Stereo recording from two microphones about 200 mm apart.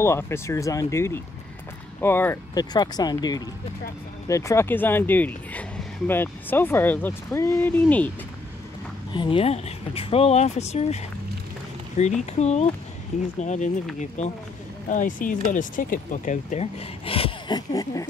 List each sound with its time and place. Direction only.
0.0 s speech: 15° left (ahead or behind)
9.1 s speech: 25° left (ahead or behind)